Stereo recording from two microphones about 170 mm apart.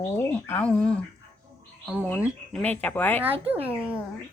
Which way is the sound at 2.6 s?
10° left (ahead or behind).